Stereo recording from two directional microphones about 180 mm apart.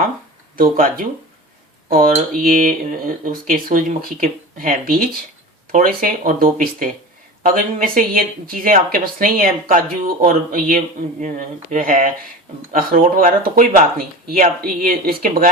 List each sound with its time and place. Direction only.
0.5 s speech: 50° right (ahead or behind)